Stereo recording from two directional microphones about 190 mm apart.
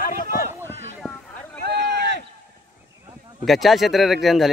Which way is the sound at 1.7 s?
65° right (ahead or behind).